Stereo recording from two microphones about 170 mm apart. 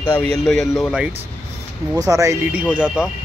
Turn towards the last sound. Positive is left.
turn(degrees=-5)  # may be behind; listen again after turning